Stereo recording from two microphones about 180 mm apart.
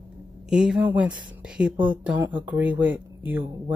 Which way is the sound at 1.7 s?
25° right (ahead or behind).